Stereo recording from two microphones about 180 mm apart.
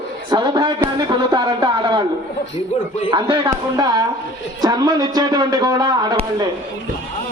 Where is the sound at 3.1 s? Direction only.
25° right (ahead or behind).